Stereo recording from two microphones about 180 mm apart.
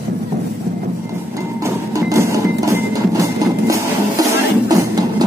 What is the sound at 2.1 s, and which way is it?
Music, 15° right (ahead or behind).